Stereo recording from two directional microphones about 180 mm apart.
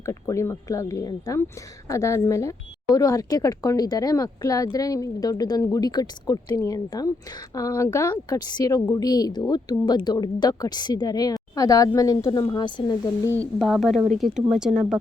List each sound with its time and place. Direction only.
0.0 s speech: 15° left (ahead or behind)
13.3 s speech: 5° left (ahead or behind)